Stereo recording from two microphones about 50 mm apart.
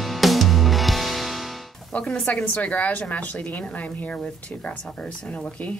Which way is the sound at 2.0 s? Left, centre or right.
Left.